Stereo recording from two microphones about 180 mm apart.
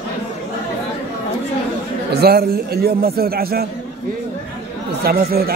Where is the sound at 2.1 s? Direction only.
60° right (ahead or behind).